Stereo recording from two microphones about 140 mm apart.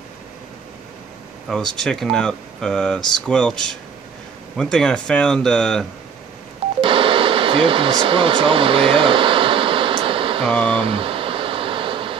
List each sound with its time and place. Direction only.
1.5 s speech: 5° left (ahead or behind)
6.8 s radio: 40° right (ahead or behind)
10.7 s a sound: 40° right (ahead or behind)